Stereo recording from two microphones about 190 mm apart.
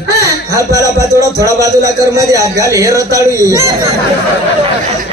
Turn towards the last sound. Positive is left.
turn(degrees=-15)  # may be behind; listen again after turning